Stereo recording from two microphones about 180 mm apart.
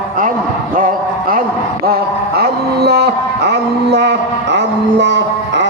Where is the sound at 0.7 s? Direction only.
50° right (ahead or behind).